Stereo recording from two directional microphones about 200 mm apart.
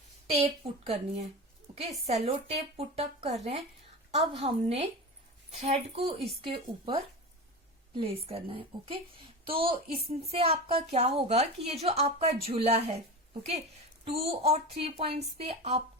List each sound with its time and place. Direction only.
0.3 s a woman's voice: 30° right (ahead or behind)
14.0 s a woman's voice: 30° right (ahead or behind)